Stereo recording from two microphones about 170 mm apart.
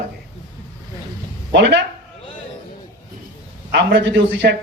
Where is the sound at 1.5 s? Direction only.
90° right.